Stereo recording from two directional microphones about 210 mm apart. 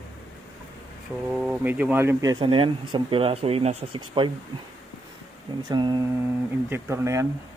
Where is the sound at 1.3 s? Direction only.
5° right (ahead or behind).